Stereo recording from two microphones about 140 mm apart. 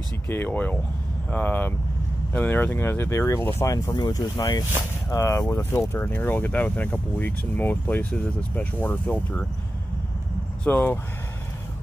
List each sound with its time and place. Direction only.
0.3 s speech: 15° left (ahead or behind)
10.6 s speech: 10° left (ahead or behind)